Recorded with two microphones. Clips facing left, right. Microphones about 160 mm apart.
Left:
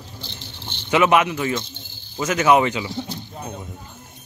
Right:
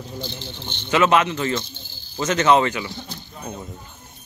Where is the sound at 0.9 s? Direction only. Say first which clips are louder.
Left 1 dB; 15° left (ahead or behind).